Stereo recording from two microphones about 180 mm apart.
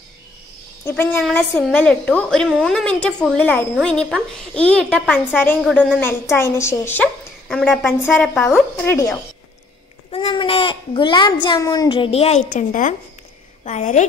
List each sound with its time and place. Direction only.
0.8 s a woman's voice: 10° left (ahead or behind)
8.7 s a woman's voice: 15° left (ahead or behind)
10.1 s a child's voice: 30° left (ahead or behind)